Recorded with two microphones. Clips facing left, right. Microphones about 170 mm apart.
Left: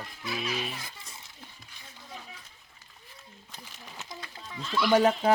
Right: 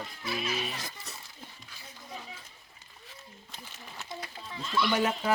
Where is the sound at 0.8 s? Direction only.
85° right.